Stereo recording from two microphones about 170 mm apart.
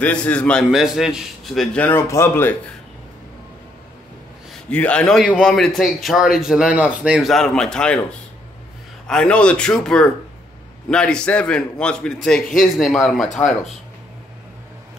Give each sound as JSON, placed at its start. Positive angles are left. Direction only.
{"t": 0.0, "sound": "a man's voice", "side_deg": 5}
{"t": 4.6, "sound": "a man's voice", "side_deg": 10}
{"t": 9.0, "sound": "a man's voice", "side_deg": 5}